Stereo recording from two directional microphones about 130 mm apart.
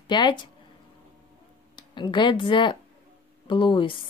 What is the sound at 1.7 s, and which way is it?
Speech, 35° left (ahead or behind).